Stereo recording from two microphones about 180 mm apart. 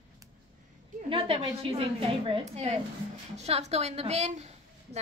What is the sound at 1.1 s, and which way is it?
A woman's voice, 30° right (ahead or behind).